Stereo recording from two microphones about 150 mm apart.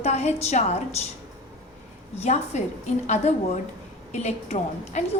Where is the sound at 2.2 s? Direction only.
50° left (ahead or behind).